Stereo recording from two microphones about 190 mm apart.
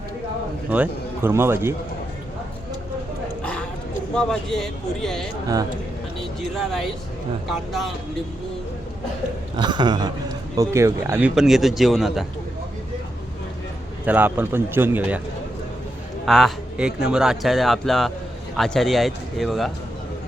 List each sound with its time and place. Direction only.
0.7 s a man's voice: 10° right (ahead or behind)
3.4 s a sound: 5° left (ahead or behind)
4.1 s a man's voice: 5° left (ahead or behind)
9.6 s a man's voice: 25° right (ahead or behind)
11.3 s a man's voice: centre (ahead or behind)
14.0 s a man's voice: 10° right (ahead or behind)
16.2 s a man's voice: centre (ahead or behind)